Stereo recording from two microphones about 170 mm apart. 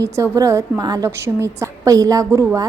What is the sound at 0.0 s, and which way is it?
A woman's voice, 20° right (ahead or behind).